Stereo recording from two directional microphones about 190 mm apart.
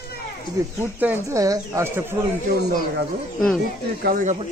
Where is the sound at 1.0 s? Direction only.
15° right (ahead or behind).